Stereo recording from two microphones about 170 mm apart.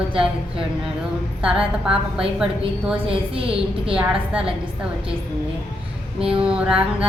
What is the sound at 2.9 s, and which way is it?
A woman's voice, 35° right (ahead or behind).